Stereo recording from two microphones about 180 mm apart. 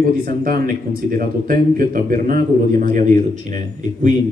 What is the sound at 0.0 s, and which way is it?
A man's voice, 50° right (ahead or behind).